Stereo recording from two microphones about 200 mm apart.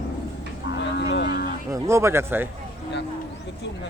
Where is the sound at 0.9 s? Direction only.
60° left (ahead or behind).